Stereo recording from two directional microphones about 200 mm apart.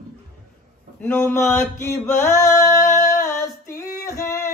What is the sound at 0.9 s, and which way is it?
Male singing, 10° left (ahead or behind).